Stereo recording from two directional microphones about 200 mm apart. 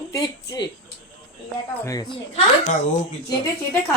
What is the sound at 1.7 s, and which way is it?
Speech, 15° left (ahead or behind).